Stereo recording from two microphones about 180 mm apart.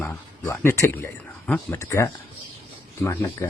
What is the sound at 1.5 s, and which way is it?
Speech, 5° left (ahead or behind).